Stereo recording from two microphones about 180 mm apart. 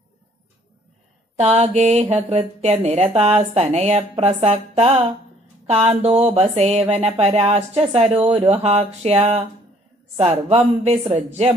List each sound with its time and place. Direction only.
1.4 s speech: 40° right (ahead or behind)